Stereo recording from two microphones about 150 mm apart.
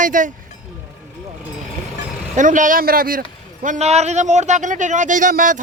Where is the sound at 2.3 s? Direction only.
60° right (ahead or behind).